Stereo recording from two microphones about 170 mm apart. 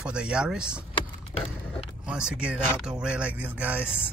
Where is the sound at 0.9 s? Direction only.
35° left (ahead or behind).